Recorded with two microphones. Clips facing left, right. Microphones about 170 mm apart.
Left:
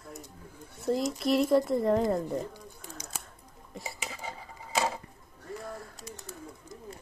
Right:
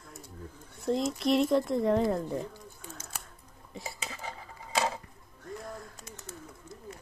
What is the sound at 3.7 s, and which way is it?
Dishes, centre (ahead or behind).